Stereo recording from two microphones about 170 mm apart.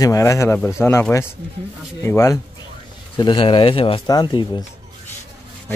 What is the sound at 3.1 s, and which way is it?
Speech, 30° left (ahead or behind).